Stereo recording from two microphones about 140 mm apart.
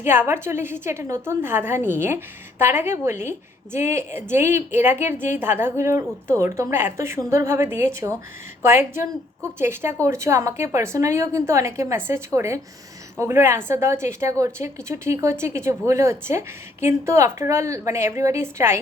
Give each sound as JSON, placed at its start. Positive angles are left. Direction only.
{"t": 0.0, "sound": "a woman's voice", "side_deg": -15}